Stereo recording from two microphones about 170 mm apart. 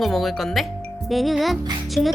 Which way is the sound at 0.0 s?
Centre (ahead or behind).